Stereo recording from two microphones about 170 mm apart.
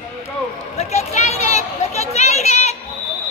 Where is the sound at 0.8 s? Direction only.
40° left (ahead or behind).